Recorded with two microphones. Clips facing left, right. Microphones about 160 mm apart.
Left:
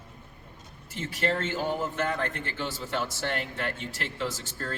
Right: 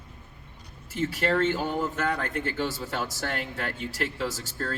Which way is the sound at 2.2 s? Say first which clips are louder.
Right 3 dB; 40° right (ahead or behind).